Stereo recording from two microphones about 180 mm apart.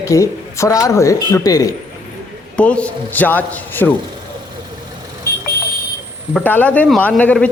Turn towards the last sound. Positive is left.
turn(degrees=5)  # may be behind; listen again after turning